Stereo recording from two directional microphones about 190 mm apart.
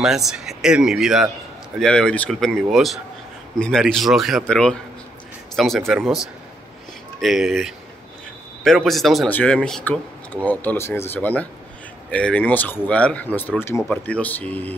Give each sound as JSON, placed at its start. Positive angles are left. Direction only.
{"t": 0.0, "sound": "speech", "side_deg": 0}
{"t": 5.9, "sound": "speech", "side_deg": 0}